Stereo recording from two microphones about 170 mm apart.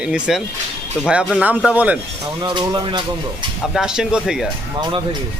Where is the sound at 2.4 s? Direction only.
25° right (ahead or behind).